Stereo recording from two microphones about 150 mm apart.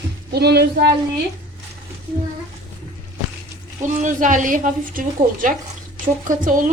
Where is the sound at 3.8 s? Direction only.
55° right (ahead or behind).